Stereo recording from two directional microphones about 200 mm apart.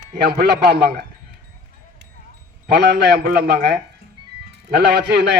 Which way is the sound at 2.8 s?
60° right (ahead or behind).